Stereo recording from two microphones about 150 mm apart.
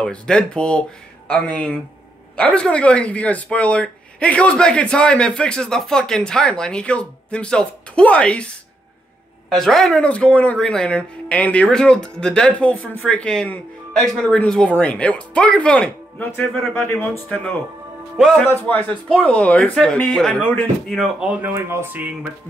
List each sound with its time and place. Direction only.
0.0 s speech: 5° left (ahead or behind)
21.4 s speech: 15° right (ahead or behind)